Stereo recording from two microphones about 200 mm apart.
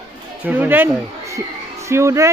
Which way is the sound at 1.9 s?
15° right (ahead or behind).